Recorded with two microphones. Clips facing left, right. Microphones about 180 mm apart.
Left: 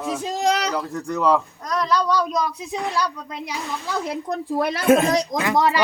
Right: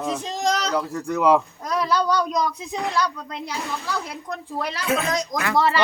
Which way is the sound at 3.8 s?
20° left (ahead or behind).